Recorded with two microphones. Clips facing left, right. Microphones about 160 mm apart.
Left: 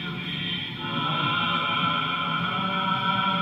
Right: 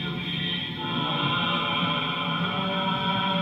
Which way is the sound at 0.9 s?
20° right (ahead or behind).